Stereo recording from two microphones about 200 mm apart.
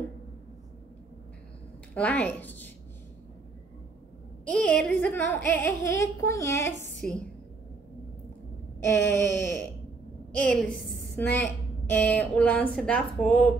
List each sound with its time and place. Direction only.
2.0 s speech: 5° left (ahead or behind)
4.5 s speech: 5° left (ahead or behind)
8.8 s a woman's voice: 15° left (ahead or behind)